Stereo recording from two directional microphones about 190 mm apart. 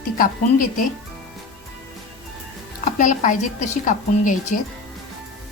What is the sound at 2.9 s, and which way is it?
A woman's voice, 40° left (ahead or behind).